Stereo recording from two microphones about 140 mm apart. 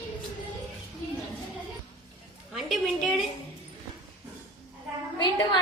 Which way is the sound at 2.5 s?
Centre (ahead or behind).